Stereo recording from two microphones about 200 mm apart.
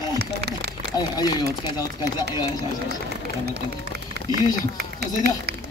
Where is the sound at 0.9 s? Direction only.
20° left (ahead or behind).